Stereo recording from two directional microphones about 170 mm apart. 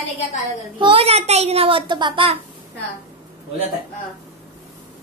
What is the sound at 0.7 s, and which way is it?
A child's voice, 30° right (ahead or behind).